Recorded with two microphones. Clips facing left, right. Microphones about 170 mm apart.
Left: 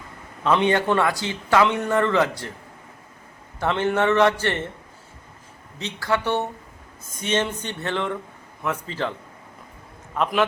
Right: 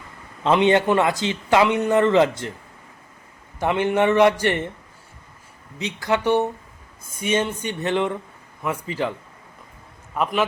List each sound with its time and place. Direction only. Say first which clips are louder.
0.4 s a man's voice: right 3 dB; 20° right (ahead or behind)
3.6 s a man's voice: right 2 dB; 15° right (ahead or behind)
5.8 s a man's voice: right 3 dB; 20° right (ahead or behind)
10.2 s a man's voice: even; 5° right (ahead or behind)